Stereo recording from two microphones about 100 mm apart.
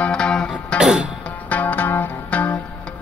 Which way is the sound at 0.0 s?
10° left (ahead or behind).